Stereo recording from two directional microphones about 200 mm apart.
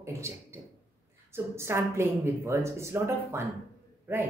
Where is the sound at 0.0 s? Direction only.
15° right (ahead or behind).